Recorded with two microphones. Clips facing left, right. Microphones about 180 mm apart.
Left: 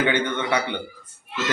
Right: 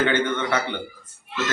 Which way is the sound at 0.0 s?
15° left (ahead or behind).